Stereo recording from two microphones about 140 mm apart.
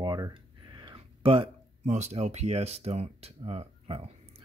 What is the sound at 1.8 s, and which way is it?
Speech, 55° right (ahead or behind).